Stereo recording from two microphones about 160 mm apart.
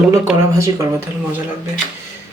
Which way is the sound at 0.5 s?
20° right (ahead or behind).